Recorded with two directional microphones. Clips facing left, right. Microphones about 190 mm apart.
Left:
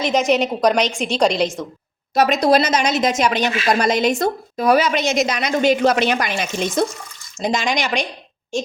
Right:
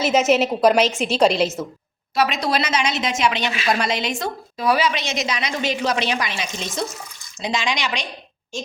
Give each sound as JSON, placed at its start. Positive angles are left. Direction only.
{"t": 0.0, "sound": "a woman's voice", "side_deg": -5}
{"t": 2.1, "sound": "a woman's voice", "side_deg": 45}